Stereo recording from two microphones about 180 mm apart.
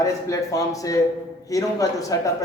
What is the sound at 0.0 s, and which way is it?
A man's voice, 20° left (ahead or behind).